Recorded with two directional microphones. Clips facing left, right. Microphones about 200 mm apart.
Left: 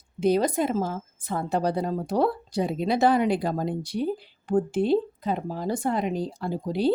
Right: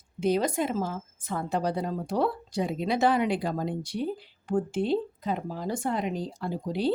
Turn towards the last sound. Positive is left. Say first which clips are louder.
# left 3 dB
turn(degrees=35)  # may be behind; listen again after turning